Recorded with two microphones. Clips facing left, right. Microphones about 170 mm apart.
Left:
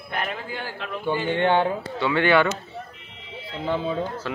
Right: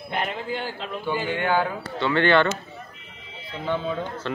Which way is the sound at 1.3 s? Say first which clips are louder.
Left 4 dB; 25° left (ahead or behind).